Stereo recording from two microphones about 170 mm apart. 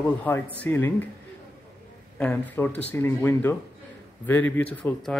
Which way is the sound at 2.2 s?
10° left (ahead or behind).